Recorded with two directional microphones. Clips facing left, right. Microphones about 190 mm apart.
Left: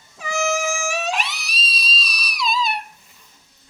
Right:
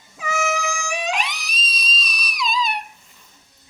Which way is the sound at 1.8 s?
Centre (ahead or behind).